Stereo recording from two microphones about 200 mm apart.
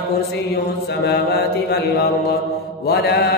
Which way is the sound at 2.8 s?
55° left (ahead or behind).